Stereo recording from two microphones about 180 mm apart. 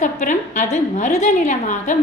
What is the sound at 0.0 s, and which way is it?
A woman's voice, 45° left (ahead or behind).